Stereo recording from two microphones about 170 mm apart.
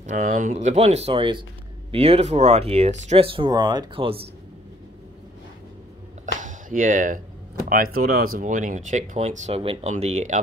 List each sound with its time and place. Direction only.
0.0 s speech: 50° right (ahead or behind); by 4.3 s 30° right (ahead or behind)
6.4 s a sound: 50° right (ahead or behind)
7.7 s speech: 60° right (ahead or behind); by 10.4 s 45° right (ahead or behind)